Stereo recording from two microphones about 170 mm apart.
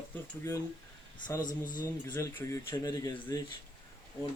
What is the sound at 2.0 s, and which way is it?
Speech, 15° left (ahead or behind).